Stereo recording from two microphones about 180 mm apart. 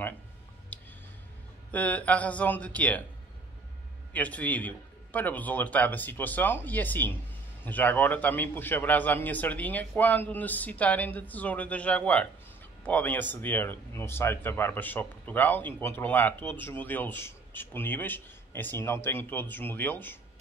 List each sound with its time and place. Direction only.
0.7 s music: 10° left (ahead or behind)
1.7 s speech: 10° left (ahead or behind)
4.1 s speech: 10° left (ahead or behind)